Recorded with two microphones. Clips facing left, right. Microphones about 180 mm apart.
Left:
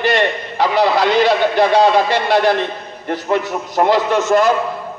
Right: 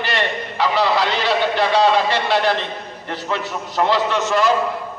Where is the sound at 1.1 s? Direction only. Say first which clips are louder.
Left 7 dB; 15° left (ahead or behind).